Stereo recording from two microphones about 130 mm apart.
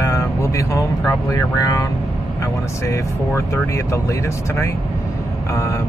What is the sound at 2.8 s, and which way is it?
Speech, 20° left (ahead or behind).